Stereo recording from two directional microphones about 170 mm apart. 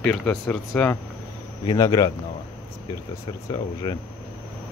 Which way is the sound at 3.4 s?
20° left (ahead or behind).